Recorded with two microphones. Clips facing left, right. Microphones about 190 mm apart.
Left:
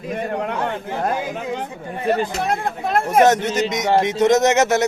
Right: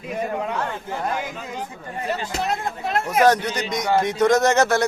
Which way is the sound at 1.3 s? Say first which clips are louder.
Left 6 dB; 65° left (ahead or behind).